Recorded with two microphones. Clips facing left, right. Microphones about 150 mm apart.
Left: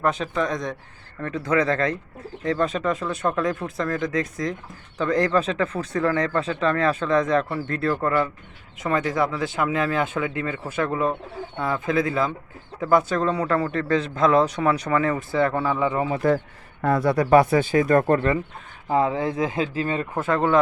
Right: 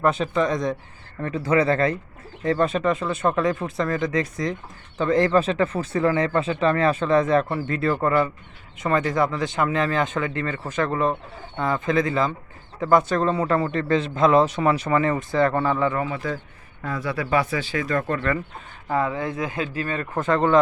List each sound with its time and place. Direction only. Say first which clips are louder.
0.0 s a man's voice: right 2 dB; centre (ahead or behind)
16.2 s speech: left 8 dB; 55° left (ahead or behind)
18.9 s speech: left 3 dB; 25° left (ahead or behind)
20.1 s a man's voice: right 2 dB; 5° left (ahead or behind)